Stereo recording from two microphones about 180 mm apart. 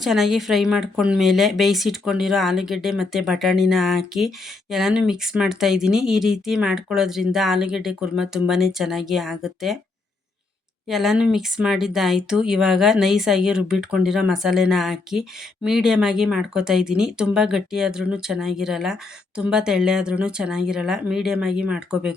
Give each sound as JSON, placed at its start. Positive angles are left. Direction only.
{"t": 0.0, "sound": "speech", "side_deg": 0}
{"t": 10.8, "sound": "speech", "side_deg": 0}